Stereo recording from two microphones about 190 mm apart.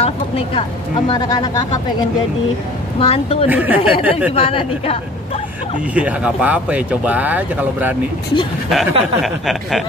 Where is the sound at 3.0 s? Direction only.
30° left (ahead or behind).